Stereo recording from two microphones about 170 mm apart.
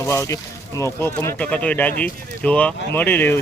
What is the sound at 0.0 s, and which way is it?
Speech, 15° left (ahead or behind).